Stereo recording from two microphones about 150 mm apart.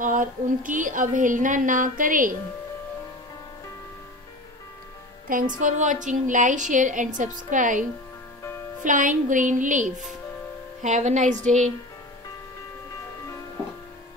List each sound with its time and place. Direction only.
0.0 s a sound: 60° right (ahead or behind)
0.7 s a woman's voice: 60° right (ahead or behind)
5.3 s a woman's voice: 60° right (ahead or behind)
8.8 s a woman's voice: 60° right (ahead or behind)